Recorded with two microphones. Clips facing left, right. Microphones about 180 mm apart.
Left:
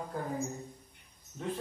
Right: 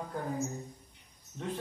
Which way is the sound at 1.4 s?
Centre (ahead or behind).